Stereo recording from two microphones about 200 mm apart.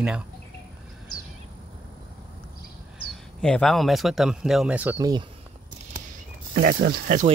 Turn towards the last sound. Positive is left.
turn(degrees=-50)  # may be behind; listen again after turning